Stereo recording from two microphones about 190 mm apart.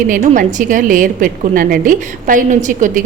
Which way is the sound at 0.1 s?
45° right (ahead or behind).